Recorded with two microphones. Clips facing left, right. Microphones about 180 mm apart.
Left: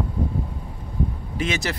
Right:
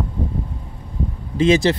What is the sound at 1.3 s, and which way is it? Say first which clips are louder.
Speech: right 12 dB; 30° right (ahead or behind).